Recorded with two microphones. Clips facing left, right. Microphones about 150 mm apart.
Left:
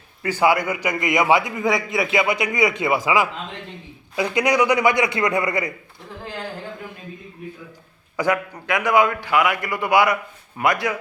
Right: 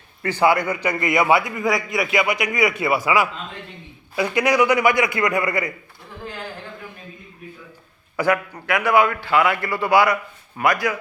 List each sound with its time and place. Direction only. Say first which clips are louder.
0.2 s a man's voice: even; 10° left (ahead or behind)
8.1 s a man's voice: right 1 dB; 20° left (ahead or behind)